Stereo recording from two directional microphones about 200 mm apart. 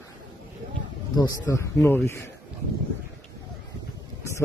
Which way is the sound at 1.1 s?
20° left (ahead or behind).